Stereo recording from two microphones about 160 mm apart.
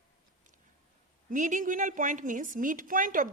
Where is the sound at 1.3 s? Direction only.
55° right (ahead or behind).